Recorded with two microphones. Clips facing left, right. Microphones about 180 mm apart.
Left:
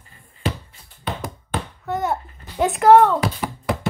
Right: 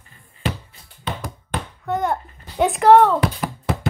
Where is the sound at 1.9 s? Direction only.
5° left (ahead or behind).